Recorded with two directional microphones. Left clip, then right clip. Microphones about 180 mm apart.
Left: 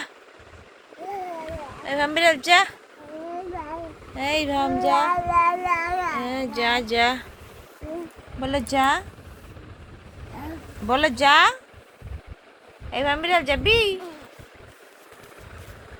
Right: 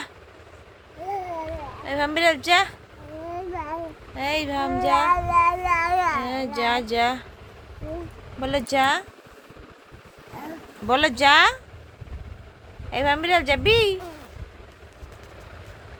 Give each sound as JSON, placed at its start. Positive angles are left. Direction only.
{"t": 1.8, "sound": "speech", "side_deg": -10}
{"t": 3.5, "sound": "a sound", "side_deg": -30}
{"t": 4.1, "sound": "speech", "side_deg": 5}
{"t": 4.8, "sound": "cat", "side_deg": 0}
{"t": 5.0, "sound": "cat", "side_deg": -35}
{"t": 5.8, "sound": "a sound", "side_deg": -25}
{"t": 6.2, "sound": "speech", "side_deg": -5}
{"t": 8.4, "sound": "speech", "side_deg": -15}
{"t": 10.8, "sound": "speech", "side_deg": -15}
{"t": 12.9, "sound": "speech", "side_deg": -25}